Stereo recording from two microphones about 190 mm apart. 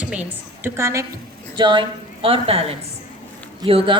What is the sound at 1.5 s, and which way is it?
A woman's voice, 25° right (ahead or behind).